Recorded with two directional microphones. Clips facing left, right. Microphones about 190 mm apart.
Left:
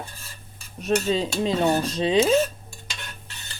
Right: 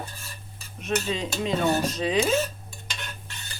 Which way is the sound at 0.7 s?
35° left (ahead or behind).